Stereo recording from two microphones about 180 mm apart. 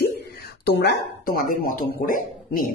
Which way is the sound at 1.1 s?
55° left (ahead or behind).